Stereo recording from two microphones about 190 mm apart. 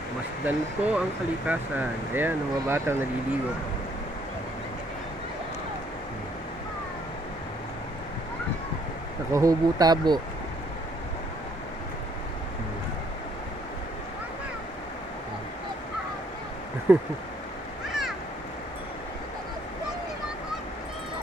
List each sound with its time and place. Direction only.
0.4 s speech: 10° right (ahead or behind)
9.3 s speech: 15° right (ahead or behind)
16.9 s speech: 10° right (ahead or behind)